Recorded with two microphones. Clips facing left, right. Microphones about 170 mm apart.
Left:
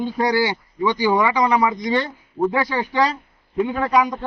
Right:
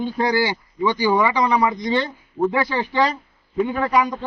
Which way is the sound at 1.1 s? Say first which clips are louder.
Even; 5° left (ahead or behind).